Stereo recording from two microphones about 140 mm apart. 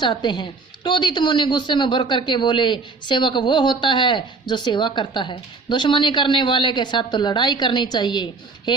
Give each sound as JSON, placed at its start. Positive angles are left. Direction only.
{"t": 0.0, "sound": "speech", "side_deg": 35}